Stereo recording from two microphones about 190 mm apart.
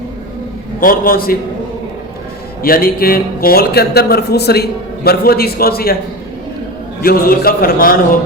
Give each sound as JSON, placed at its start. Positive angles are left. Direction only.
{"t": 0.8, "sound": "a man's voice", "side_deg": 50}
{"t": 2.6, "sound": "a man's voice", "side_deg": 50}
{"t": 7.0, "sound": "a man's voice", "side_deg": 50}